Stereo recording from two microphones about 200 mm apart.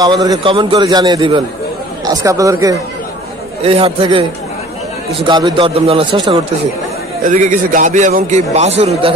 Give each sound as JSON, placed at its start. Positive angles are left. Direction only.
{"t": 0.0, "sound": "a man's voice", "side_deg": -20}
{"t": 3.6, "sound": "a man's voice", "side_deg": -30}
{"t": 7.2, "sound": "a man's voice", "side_deg": -40}